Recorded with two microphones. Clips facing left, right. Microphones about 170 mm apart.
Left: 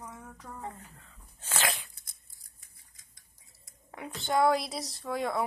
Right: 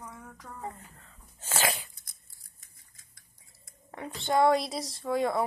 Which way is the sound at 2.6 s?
15° left (ahead or behind).